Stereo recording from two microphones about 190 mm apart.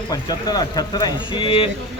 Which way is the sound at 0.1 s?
20° left (ahead or behind).